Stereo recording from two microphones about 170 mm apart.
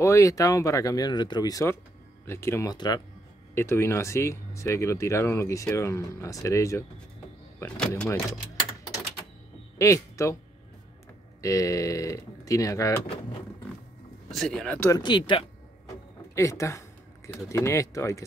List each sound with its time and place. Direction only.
0.0 s speech: 20° left (ahead or behind)
7.5 s speech: 10° left (ahead or behind)
9.8 s speech: 15° left (ahead or behind)
11.4 s speech: 20° left (ahead or behind)
14.3 s speech: centre (ahead or behind)
15.0 s speech: 25° left (ahead or behind)
16.3 s speech: 15° left (ahead or behind)